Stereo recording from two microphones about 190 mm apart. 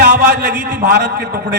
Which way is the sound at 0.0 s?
60° right (ahead or behind).